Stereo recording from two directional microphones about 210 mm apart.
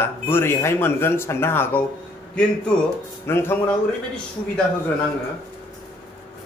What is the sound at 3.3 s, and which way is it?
Speech, 10° left (ahead or behind).